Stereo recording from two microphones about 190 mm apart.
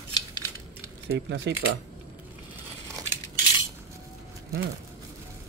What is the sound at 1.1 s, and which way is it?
Speech, 65° right (ahead or behind).